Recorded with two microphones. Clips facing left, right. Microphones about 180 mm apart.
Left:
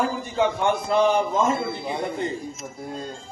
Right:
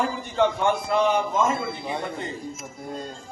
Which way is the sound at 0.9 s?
30° left (ahead or behind).